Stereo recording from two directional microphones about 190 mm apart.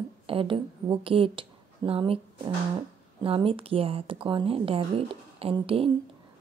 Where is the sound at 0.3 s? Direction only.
25° right (ahead or behind).